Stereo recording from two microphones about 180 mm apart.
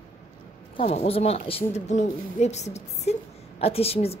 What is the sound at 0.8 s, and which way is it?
A woman's voice, 35° left (ahead or behind).